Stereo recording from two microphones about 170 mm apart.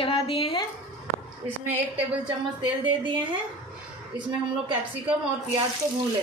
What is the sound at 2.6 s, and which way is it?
Speech, 30° right (ahead or behind).